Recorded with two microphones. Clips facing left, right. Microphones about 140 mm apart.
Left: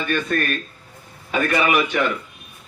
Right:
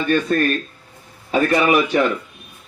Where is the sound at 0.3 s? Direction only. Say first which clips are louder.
Right 3 dB; 25° right (ahead or behind).